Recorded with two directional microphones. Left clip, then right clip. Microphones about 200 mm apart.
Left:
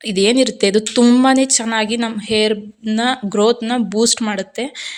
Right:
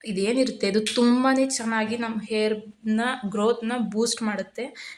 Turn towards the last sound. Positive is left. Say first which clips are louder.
# left 10 dB
turn(degrees=40)  # may be behind; listen again after turning